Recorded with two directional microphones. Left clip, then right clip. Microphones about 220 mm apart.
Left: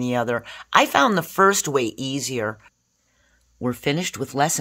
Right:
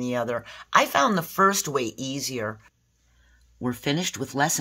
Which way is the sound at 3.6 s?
30° left (ahead or behind).